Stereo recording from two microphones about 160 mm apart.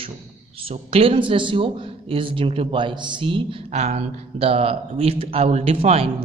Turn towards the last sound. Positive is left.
turn(degrees=-40)  # may be behind; listen again after turning